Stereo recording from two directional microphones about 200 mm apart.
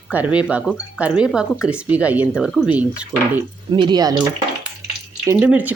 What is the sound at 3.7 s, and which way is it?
Speech, 20° right (ahead or behind).